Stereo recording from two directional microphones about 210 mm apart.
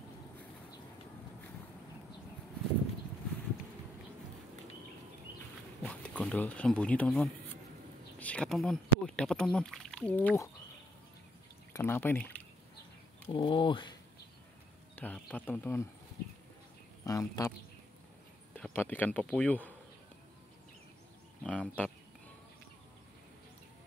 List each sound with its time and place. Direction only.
5.8 s speech: 5° left (ahead or behind)
11.7 s speech: 10° left (ahead or behind)
13.3 s speech: 25° left (ahead or behind)
15.0 s speech: 5° left (ahead or behind)
17.0 s speech: 15° left (ahead or behind)
18.6 s speech: 10° left (ahead or behind)
21.4 s speech: 5° left (ahead or behind)